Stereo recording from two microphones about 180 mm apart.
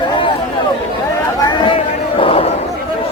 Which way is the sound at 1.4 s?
25° left (ahead or behind).